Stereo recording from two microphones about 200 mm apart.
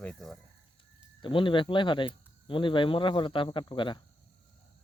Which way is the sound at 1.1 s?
25° left (ahead or behind).